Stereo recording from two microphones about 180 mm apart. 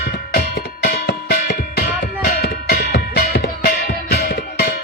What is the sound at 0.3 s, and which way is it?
Music, 60° left (ahead or behind).